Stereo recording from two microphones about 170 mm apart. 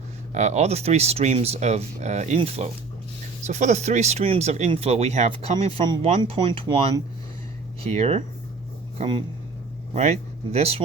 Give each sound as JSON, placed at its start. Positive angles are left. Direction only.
{"t": 0.3, "sound": "speech", "side_deg": -40}
{"t": 9.9, "sound": "speech", "side_deg": -40}